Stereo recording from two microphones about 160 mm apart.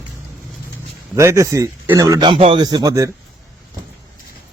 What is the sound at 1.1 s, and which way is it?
Speech, 20° right (ahead or behind).